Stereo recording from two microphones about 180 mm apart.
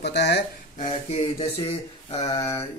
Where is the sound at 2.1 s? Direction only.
20° left (ahead or behind).